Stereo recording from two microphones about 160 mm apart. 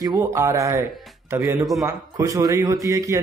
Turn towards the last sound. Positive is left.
turn(degrees=-20)  # may be behind; listen again after turning